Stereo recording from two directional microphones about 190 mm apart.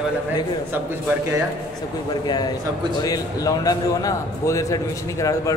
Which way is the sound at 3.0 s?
20° left (ahead or behind).